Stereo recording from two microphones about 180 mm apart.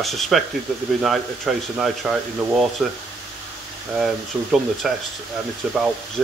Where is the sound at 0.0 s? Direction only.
Centre (ahead or behind).